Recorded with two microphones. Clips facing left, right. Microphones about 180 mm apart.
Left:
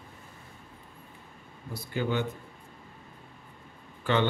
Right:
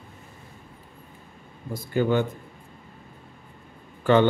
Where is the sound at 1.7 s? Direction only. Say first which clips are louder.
Right 7 dB; 45° right (ahead or behind).